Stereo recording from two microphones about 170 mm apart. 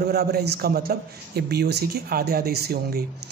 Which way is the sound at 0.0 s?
65° right (ahead or behind).